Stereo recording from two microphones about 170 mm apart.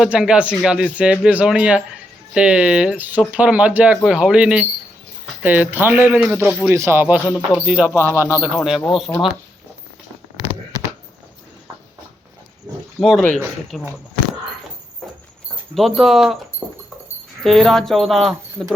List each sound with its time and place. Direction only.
0.0 s speech: 5° right (ahead or behind)
6.7 s speech: 15° right (ahead or behind)
8.5 s speech: centre (ahead or behind)
12.7 s pig: 20° right (ahead or behind)
13.0 s speech: centre (ahead or behind)
15.0 s horse: centre (ahead or behind)
15.7 s speech: centre (ahead or behind)
17.4 s speech: centre (ahead or behind)